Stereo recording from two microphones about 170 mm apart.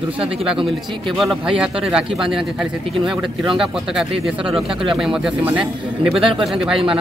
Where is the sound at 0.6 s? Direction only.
Centre (ahead or behind).